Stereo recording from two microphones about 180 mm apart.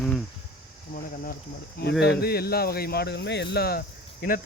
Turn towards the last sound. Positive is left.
turn(degrees=55)  # may be behind; listen again after turning